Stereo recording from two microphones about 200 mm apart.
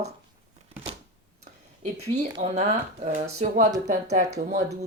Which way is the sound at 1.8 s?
35° right (ahead or behind).